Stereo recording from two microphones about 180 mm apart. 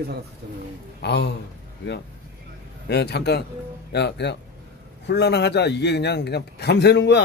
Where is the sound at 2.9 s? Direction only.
65° left (ahead or behind).